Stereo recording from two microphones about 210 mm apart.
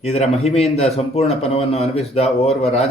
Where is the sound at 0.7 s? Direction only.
30° left (ahead or behind).